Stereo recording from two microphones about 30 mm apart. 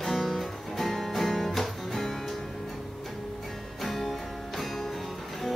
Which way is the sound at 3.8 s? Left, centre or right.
Centre.